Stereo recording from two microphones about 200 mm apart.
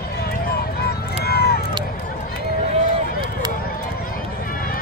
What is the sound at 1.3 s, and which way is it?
Run, 55° left (ahead or behind).